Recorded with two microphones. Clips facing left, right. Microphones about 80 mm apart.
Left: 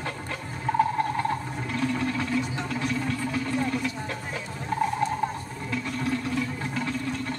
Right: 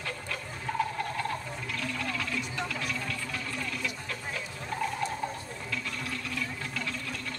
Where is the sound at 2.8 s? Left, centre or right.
Left.